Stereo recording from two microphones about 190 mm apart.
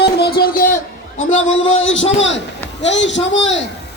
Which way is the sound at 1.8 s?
80° left.